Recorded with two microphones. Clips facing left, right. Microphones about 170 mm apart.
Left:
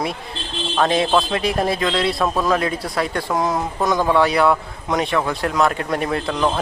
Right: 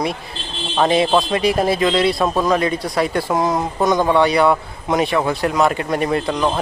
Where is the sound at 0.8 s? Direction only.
5° right (ahead or behind).